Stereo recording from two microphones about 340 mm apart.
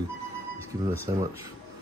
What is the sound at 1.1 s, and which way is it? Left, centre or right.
Speech, centre.